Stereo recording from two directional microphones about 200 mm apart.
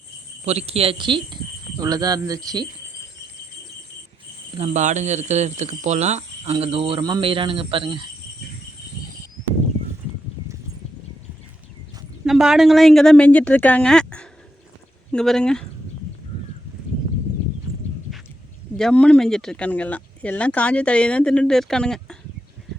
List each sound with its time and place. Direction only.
0.4 s speech: 30° right (ahead or behind)
4.5 s speech: 35° right (ahead or behind)
12.2 s speech: centre (ahead or behind)
18.8 s speech: 5° left (ahead or behind)